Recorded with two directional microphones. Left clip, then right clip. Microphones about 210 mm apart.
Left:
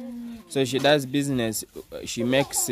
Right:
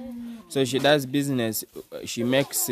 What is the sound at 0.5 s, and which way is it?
Speech, centre (ahead or behind).